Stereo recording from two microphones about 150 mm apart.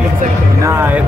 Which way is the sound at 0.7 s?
15° right (ahead or behind).